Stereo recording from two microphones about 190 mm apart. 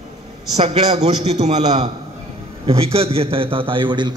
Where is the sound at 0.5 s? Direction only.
35° right (ahead or behind).